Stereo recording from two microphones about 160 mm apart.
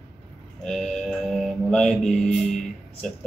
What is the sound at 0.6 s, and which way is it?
Music, 5° left (ahead or behind).